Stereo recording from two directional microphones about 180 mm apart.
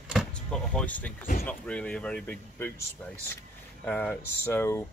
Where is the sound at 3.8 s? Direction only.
10° left (ahead or behind).